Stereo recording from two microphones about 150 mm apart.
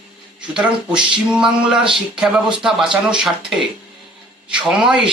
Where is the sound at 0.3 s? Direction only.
5° right (ahead or behind).